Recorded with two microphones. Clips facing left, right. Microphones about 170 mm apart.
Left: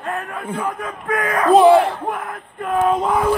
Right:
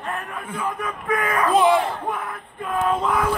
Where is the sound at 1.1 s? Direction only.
60° left (ahead or behind).